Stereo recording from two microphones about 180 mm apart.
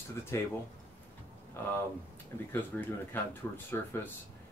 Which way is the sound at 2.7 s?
5° left (ahead or behind).